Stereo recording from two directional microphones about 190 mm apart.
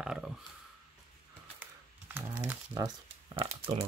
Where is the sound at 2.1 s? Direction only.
10° right (ahead or behind).